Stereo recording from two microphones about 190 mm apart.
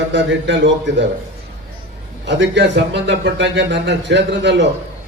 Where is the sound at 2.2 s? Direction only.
70° right (ahead or behind).